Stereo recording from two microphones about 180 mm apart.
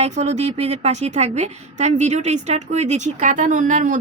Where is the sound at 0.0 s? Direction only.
40° right (ahead or behind).